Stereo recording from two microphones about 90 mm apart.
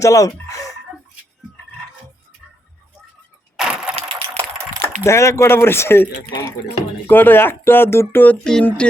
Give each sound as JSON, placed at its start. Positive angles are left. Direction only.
{"t": 0.0, "sound": "speech", "side_deg": 35}
{"t": 3.6, "sound": "a sound", "side_deg": -10}
{"t": 4.8, "sound": "speech", "side_deg": 30}
{"t": 7.1, "sound": "speech", "side_deg": 20}
{"t": 8.4, "sound": "speech", "side_deg": 10}